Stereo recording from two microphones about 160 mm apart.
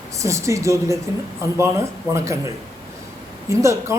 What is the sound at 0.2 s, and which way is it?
A man's voice, 20° right (ahead or behind).